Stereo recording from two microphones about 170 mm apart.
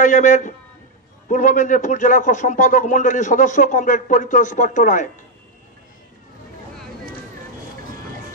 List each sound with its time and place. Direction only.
0.0 s a man's voice: 50° left (ahead or behind)